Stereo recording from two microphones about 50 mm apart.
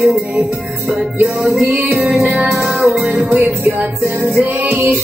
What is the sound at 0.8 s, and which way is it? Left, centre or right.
Music, centre.